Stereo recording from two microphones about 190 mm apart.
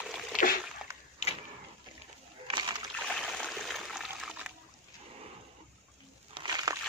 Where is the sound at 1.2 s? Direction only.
35° left (ahead or behind).